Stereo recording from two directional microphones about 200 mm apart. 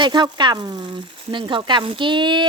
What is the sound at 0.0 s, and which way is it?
Speech, 20° right (ahead or behind).